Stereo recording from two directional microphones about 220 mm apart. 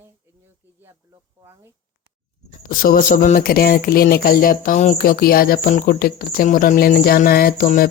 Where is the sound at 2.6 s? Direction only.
40° left (ahead or behind).